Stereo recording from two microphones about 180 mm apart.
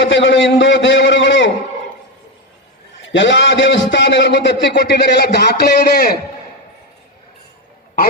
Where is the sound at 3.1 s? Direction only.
75° left (ahead or behind); by 6.1 s 60° left (ahead or behind).